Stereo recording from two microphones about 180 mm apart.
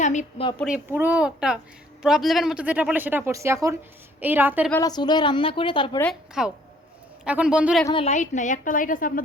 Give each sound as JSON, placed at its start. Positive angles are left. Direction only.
{"t": 0.0, "sound": "a woman's voice", "side_deg": 40}
{"t": 0.9, "sound": "speech", "side_deg": -10}
{"t": 4.7, "sound": "a woman's voice", "side_deg": 20}
{"t": 6.4, "sound": "speech", "side_deg": -5}
{"t": 8.0, "sound": "a woman's voice", "side_deg": 40}